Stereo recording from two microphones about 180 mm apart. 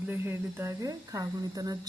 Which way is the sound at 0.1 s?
10° right (ahead or behind).